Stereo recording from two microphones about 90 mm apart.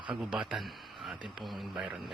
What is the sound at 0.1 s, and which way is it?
A man's voice, 10° right (ahead or behind).